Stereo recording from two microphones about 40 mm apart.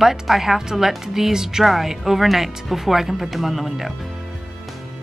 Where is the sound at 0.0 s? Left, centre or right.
Centre.